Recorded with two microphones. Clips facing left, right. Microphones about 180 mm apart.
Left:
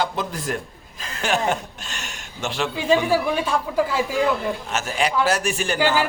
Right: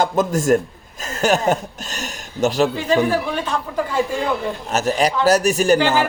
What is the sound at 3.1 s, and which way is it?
Speech, 10° left (ahead or behind).